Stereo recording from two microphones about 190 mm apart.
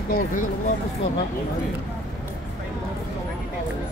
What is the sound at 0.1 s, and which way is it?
Speech, 45° left (ahead or behind).